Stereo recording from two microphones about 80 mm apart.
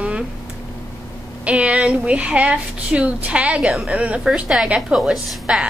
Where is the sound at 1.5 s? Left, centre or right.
Centre.